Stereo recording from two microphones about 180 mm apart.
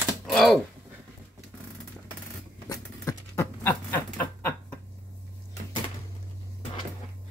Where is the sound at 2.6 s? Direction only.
15° left (ahead or behind).